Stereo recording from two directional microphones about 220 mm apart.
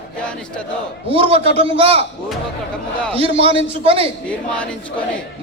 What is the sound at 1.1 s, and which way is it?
Speech, 25° right (ahead or behind).